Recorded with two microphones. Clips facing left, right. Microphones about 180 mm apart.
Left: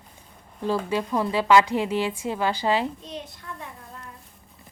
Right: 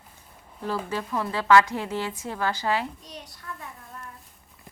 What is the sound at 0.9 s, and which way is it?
A woman's voice, 15° left (ahead or behind).